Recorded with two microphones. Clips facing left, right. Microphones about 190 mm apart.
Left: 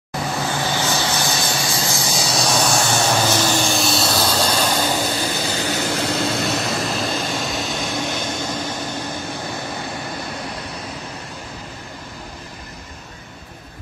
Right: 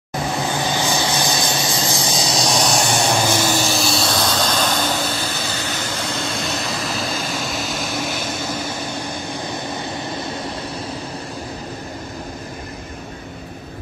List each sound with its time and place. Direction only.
0.4 s vehicle: 15° right (ahead or behind); by 5.3 s 15° left (ahead or behind)
5.9 s vehicle: 65° left (ahead or behind)
6.3 s vehicle: centre (ahead or behind)